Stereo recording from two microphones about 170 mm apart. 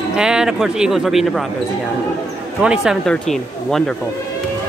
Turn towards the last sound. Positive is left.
turn(degrees=-5)  # may be behind; listen again after turning